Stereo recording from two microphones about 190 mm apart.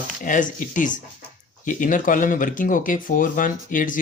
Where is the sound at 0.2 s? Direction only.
45° left (ahead or behind).